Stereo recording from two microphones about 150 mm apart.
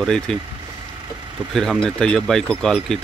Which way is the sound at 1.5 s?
Centre (ahead or behind).